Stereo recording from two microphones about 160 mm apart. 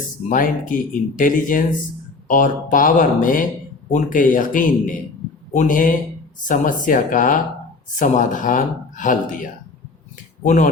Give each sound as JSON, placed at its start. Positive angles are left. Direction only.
{"t": 0.3, "sound": "speech", "side_deg": 55}